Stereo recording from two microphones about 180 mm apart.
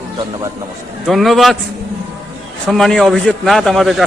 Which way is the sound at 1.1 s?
Centre (ahead or behind).